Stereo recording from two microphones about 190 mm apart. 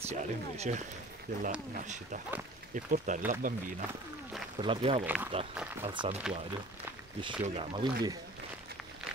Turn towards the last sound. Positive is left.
turn(degrees=-30)  # may be behind; listen again after turning